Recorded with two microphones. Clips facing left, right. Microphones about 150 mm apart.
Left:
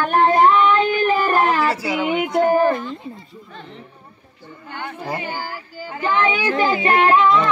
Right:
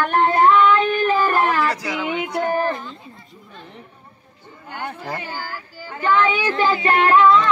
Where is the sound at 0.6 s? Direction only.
25° left (ahead or behind).